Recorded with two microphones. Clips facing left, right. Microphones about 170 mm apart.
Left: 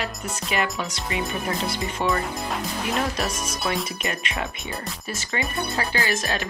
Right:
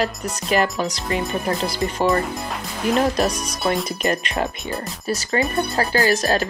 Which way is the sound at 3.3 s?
Centre (ahead or behind).